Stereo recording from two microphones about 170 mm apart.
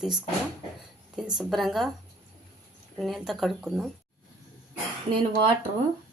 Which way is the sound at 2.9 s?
Centre (ahead or behind).